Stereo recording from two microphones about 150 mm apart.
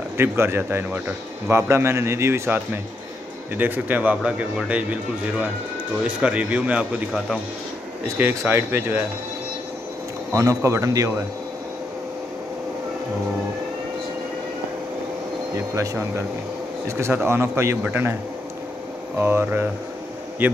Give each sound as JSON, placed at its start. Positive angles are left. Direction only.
{"t": 0.2, "sound": "a man's voice", "side_deg": -15}
{"t": 8.2, "sound": "a man's voice", "side_deg": -15}
{"t": 10.3, "sound": "speech", "side_deg": -20}
{"t": 15.5, "sound": "a man's voice", "side_deg": -20}
{"t": 19.1, "sound": "a man's voice", "side_deg": -15}